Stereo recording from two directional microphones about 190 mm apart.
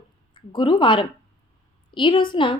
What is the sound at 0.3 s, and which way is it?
A woman's voice, 25° left (ahead or behind).